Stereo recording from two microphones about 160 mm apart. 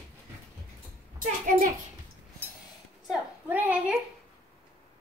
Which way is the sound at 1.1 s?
60° right (ahead or behind).